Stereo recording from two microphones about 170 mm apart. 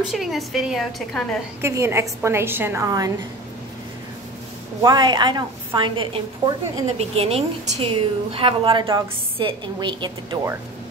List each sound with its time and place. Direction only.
0.0 s a woman's voice: centre (ahead or behind)
1.6 s a woman's voice: 15° right (ahead or behind)
4.8 s a woman's voice: 25° right (ahead or behind)